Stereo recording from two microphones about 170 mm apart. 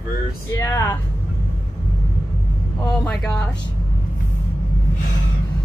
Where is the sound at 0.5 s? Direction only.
20° left (ahead or behind).